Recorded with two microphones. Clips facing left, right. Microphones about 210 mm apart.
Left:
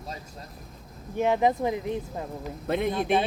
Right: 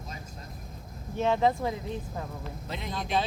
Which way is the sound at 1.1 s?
15° left (ahead or behind).